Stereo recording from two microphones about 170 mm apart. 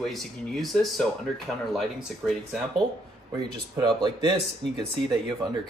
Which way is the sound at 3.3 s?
25° right (ahead or behind).